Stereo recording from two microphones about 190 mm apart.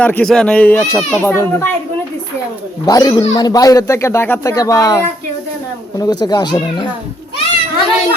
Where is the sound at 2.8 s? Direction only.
20° left (ahead or behind).